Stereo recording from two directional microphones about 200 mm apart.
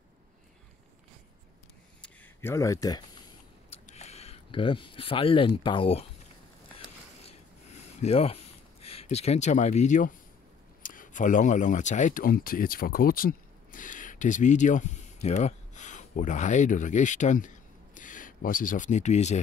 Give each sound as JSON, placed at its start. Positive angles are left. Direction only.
{"t": 2.0, "sound": "a sound", "side_deg": 15}
{"t": 3.7, "sound": "speech", "side_deg": 35}
{"t": 8.0, "sound": "speech", "side_deg": 30}